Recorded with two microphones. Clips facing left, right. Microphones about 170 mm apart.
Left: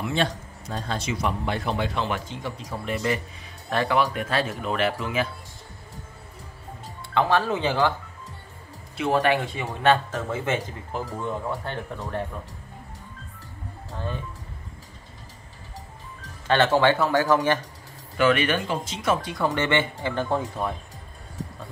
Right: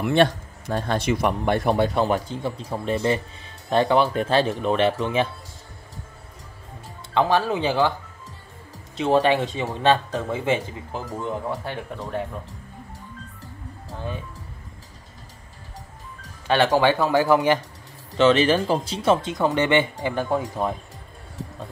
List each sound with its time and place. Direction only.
0.0 s speech: 60° right (ahead or behind); by 5.3 s 25° right (ahead or behind)
7.0 s speech: 20° right (ahead or behind)
8.9 s speech: 25° right (ahead or behind)
16.4 s speech: 15° right (ahead or behind)
18.1 s speech: 25° right (ahead or behind)